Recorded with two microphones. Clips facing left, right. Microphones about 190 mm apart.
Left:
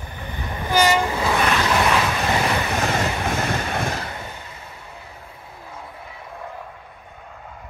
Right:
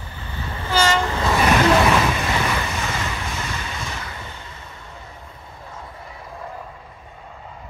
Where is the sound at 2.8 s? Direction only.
45° left (ahead or behind).